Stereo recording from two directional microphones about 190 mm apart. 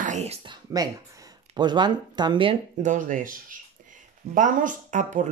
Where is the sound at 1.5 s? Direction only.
25° right (ahead or behind).